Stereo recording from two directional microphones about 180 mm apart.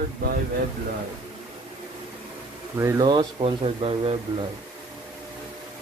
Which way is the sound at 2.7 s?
15° right (ahead or behind).